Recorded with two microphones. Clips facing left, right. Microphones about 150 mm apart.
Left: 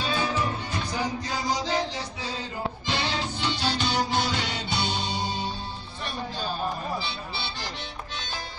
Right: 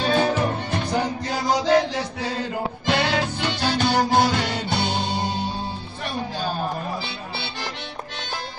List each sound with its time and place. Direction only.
0.0 s music: 60° right (ahead or behind)